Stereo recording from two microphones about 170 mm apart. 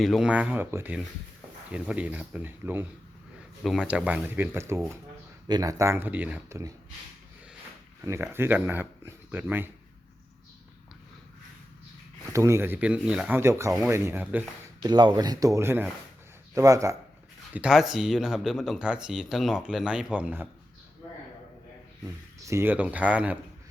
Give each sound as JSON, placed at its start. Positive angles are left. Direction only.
{"t": 0.0, "sound": "speech", "side_deg": 0}
{"t": 8.0, "sound": "speech", "side_deg": -15}
{"t": 12.2, "sound": "speech", "side_deg": -15}
{"t": 14.8, "sound": "speech", "side_deg": -25}
{"t": 17.5, "sound": "speech", "side_deg": -5}
{"t": 22.0, "sound": "speech", "side_deg": -20}